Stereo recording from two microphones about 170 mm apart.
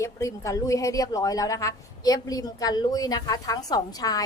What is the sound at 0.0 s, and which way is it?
A woman's voice, 20° left (ahead or behind).